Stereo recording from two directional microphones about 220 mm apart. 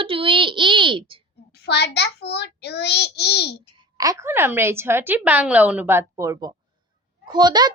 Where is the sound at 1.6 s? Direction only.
50° left (ahead or behind).